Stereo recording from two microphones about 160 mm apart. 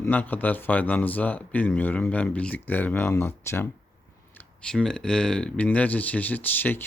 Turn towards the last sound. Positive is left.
turn(degrees=10)  # may be behind; listen again after turning